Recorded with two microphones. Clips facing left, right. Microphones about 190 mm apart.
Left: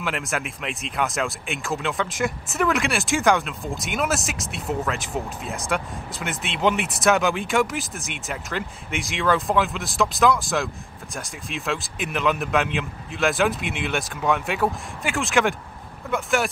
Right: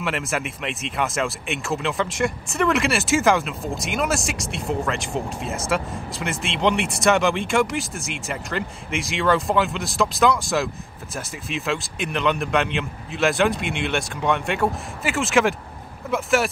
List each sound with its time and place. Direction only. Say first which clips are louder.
0.0 s speech: right 2 dB; centre (ahead or behind)